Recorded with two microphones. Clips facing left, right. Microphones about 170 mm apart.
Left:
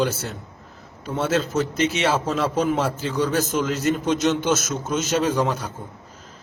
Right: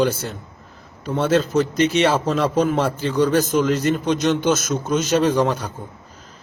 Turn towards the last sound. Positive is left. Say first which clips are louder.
# right 4 dB
turn(degrees=5)  # may be behind; listen again after turning